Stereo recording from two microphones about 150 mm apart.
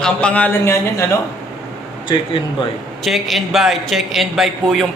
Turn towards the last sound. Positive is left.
turn(degrees=0)  # may be behind; listen again after turning